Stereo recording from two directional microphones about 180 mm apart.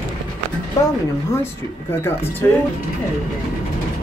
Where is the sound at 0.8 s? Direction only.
20° left (ahead or behind).